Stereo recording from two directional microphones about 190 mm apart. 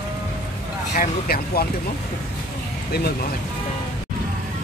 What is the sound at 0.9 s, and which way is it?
Speech, 50° left (ahead or behind).